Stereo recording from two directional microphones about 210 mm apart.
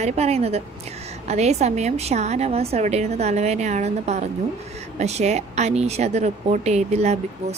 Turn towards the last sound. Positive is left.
turn(degrees=-30)  # may be behind; listen again after turning